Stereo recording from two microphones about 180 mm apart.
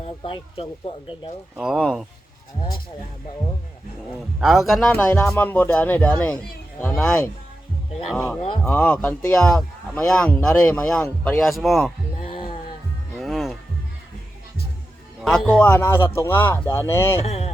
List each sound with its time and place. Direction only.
0.0 s speech: 30° left (ahead or behind)
1.5 s speech: 5° right (ahead or behind)
4.4 s a man's voice: centre (ahead or behind)
12.2 s a sound: 30° left (ahead or behind)
13.1 s music: centre (ahead or behind)
15.2 s a man's voice: 5° left (ahead or behind)
17.2 s speech: 35° left (ahead or behind)